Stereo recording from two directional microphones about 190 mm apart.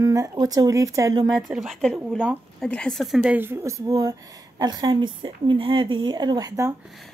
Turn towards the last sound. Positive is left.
turn(degrees=-20)  # may be behind; listen again after turning